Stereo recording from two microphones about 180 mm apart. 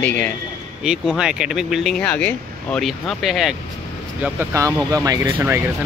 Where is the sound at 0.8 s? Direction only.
5° right (ahead or behind).